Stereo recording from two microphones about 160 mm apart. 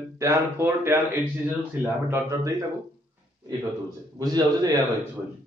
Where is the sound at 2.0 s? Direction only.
15° right (ahead or behind).